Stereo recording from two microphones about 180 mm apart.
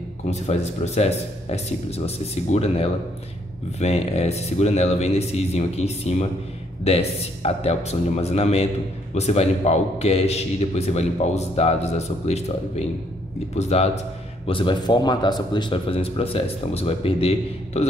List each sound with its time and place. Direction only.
0.3 s a man's voice: 40° left (ahead or behind)